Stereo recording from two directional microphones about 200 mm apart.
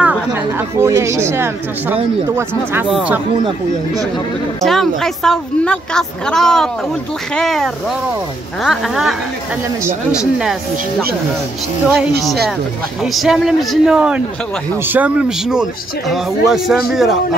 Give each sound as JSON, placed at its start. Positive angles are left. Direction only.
{"t": 0.0, "sound": "a woman's voice", "side_deg": -10}
{"t": 3.4, "sound": "speech", "side_deg": -20}
{"t": 4.6, "sound": "a woman's voice", "side_deg": 0}
{"t": 13.0, "sound": "a woman's voice", "side_deg": 0}